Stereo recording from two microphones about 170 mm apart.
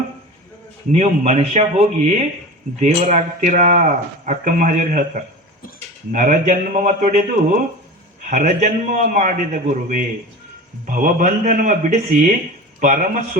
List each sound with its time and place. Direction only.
0.9 s speech: 40° right (ahead or behind)